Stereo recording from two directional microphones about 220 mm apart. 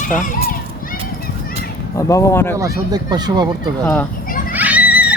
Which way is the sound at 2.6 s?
15° right (ahead or behind).